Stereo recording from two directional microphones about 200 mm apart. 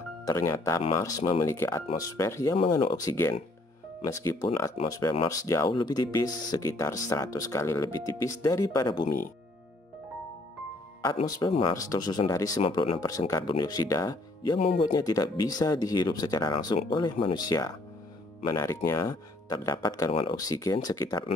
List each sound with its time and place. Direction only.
0.2 s speech: 15° left (ahead or behind)
2.5 s speech: 25° left (ahead or behind)
11.1 s speech: 20° left (ahead or behind)
18.9 s speech: 15° left (ahead or behind)